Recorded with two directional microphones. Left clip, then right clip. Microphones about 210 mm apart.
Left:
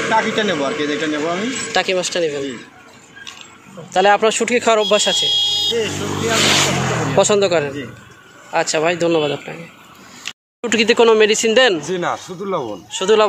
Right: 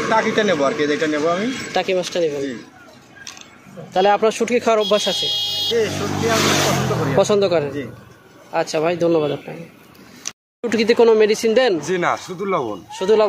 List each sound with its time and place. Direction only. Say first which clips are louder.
0.1 s a man's voice: right 1 dB; 10° right (ahead or behind)
1.7 s speech: left 3 dB; centre (ahead or behind)
3.9 s speech: left 2 dB; centre (ahead or behind)
5.2 s fire alarm: left 4 dB; 30° right (ahead or behind)
5.9 s speech: even; 45° right (ahead or behind)
6.6 s speech: left 1 dB; 25° right (ahead or behind)
7.0 s speech: left 2 dB; centre (ahead or behind)
11.8 s a man's voice: right 1 dB; 10° right (ahead or behind)
12.9 s speech: left 2 dB; centre (ahead or behind)